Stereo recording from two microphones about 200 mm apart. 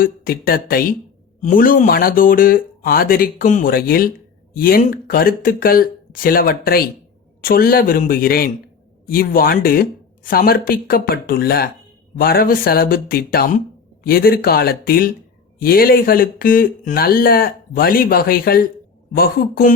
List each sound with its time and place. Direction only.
0.0 s speech: 45° left (ahead or behind)